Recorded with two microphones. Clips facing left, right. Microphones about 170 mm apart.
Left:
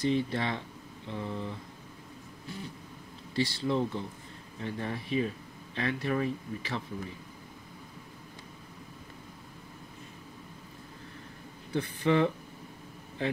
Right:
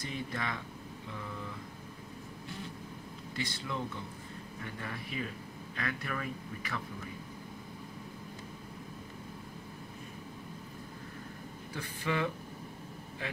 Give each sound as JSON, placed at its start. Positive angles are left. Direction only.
{"t": 0.0, "sound": "speech", "side_deg": 30}
{"t": 3.6, "sound": "speech", "side_deg": 30}
{"t": 11.7, "sound": "speech", "side_deg": 30}